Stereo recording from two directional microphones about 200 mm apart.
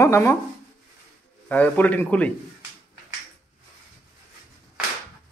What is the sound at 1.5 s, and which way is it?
Speech, 10° left (ahead or behind).